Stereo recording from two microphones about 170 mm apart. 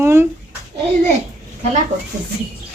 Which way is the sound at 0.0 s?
15° right (ahead or behind).